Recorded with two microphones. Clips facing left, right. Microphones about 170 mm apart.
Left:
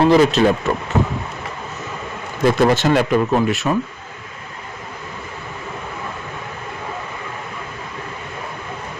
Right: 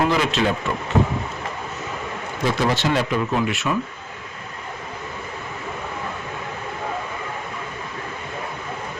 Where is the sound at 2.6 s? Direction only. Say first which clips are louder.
Left 5 dB; 50° left (ahead or behind).